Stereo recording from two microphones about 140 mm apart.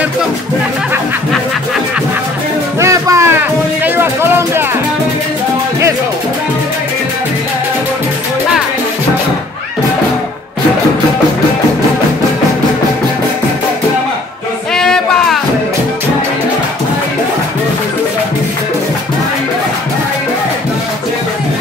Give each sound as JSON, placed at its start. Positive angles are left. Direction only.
{"t": 2.8, "sound": "music", "side_deg": -20}
{"t": 14.7, "sound": "music", "side_deg": 5}